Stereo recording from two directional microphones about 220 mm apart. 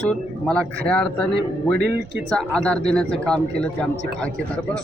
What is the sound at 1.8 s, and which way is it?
Speech, 45° right (ahead or behind).